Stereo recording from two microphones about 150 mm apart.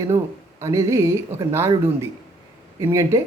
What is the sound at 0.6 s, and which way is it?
Speech, 20° right (ahead or behind).